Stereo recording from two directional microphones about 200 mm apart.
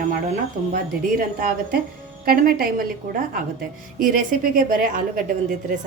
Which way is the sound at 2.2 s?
45° right (ahead or behind).